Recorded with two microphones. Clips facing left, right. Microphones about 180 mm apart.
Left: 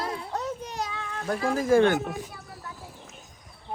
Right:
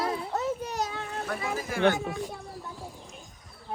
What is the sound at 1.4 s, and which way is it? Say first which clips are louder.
Speech: left 16 dB; 45° left (ahead or behind).